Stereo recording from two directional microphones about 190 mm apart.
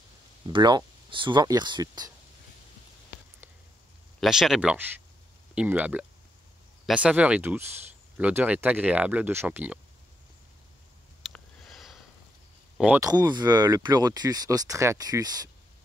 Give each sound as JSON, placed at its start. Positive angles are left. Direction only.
{"t": 0.5, "sound": "speech", "side_deg": -25}
{"t": 4.2, "sound": "speech", "side_deg": 0}
{"t": 11.3, "sound": "sniff", "side_deg": 0}
{"t": 12.7, "sound": "speech", "side_deg": -5}
{"t": 13.0, "sound": "speech", "side_deg": -20}